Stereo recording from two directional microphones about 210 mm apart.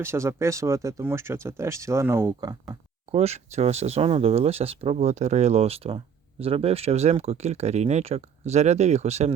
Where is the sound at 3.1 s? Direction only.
30° right (ahead or behind).